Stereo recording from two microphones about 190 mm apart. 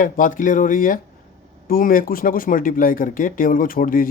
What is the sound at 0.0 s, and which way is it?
Speech, 45° left (ahead or behind).